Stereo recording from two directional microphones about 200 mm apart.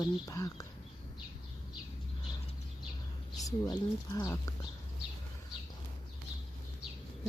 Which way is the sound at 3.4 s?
20° left (ahead or behind).